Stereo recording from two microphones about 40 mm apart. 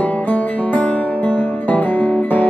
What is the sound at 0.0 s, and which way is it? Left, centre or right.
Music, left.